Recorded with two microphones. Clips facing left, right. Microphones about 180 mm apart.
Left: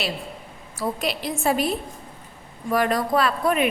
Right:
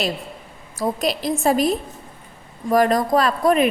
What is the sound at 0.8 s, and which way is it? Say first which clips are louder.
A woman's voice: right 4 dB; 40° right (ahead or behind).